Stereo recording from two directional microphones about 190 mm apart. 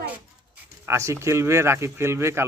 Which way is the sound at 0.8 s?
15° right (ahead or behind).